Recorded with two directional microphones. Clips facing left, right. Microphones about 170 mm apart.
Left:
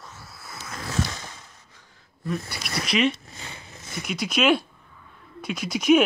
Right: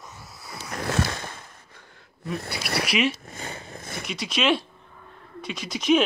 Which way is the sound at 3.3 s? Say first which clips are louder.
Right 5 dB; 45° right (ahead or behind).